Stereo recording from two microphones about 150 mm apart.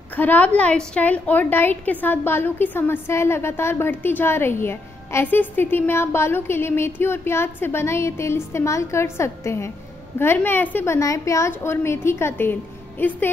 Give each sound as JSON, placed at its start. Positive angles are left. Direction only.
{"t": 0.1, "sound": "a woman's voice", "side_deg": 10}